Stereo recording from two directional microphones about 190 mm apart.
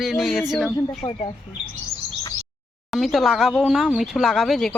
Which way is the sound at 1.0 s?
30° left (ahead or behind).